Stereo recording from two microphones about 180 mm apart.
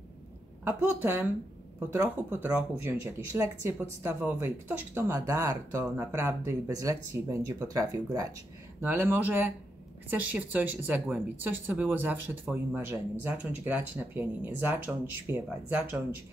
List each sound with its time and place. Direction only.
0.7 s speech: 10° right (ahead or behind)